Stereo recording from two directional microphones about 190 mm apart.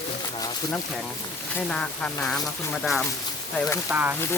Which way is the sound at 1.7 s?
5° left (ahead or behind).